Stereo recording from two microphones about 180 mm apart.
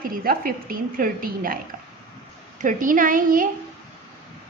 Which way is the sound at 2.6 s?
50° right (ahead or behind).